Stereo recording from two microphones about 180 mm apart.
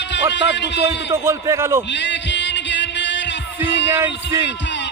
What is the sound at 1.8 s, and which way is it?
Music, 80° left.